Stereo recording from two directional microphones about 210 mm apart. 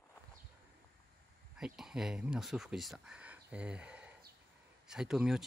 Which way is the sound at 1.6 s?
5° right (ahead or behind).